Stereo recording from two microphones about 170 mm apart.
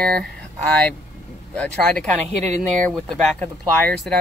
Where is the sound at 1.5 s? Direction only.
5° left (ahead or behind).